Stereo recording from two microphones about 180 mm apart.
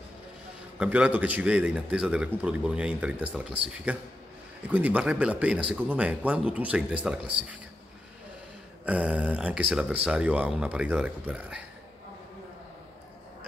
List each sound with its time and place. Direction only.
0.7 s speech: 5° right (ahead or behind)
8.8 s speech: 5° right (ahead or behind)